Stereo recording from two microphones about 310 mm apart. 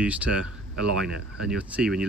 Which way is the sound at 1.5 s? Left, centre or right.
Centre.